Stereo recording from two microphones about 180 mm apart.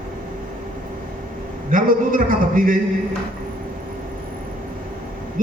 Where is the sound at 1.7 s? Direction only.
50° right (ahead or behind).